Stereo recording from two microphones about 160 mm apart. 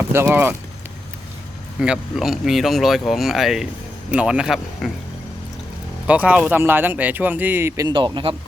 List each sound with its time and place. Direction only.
0.1 s speech: 15° right (ahead or behind)
1.8 s speech: 5° right (ahead or behind)
6.1 s speech: 10° right (ahead or behind)
7.9 s speech: 30° right (ahead or behind)